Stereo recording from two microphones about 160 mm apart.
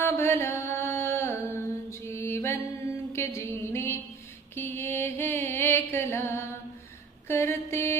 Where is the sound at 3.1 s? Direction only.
15° left (ahead or behind).